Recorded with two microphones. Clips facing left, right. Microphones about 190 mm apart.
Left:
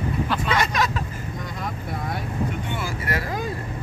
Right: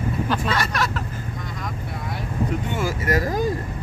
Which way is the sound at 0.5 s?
15° left (ahead or behind).